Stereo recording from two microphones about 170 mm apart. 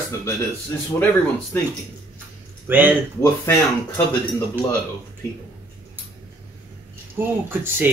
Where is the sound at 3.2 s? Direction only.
15° left (ahead or behind).